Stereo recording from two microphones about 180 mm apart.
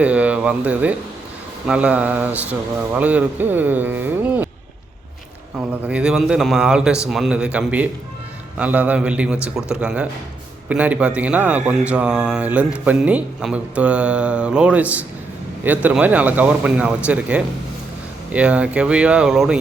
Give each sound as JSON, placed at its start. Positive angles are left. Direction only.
{"t": 0.0, "sound": "speech", "side_deg": -5}
{"t": 5.8, "sound": "a man's voice", "side_deg": -5}